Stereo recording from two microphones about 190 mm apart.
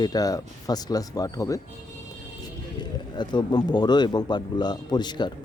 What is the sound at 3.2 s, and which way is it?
Speech, 20° left (ahead or behind).